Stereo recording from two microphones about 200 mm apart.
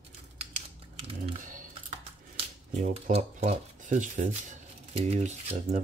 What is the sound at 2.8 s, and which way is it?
Speech, 40° right (ahead or behind).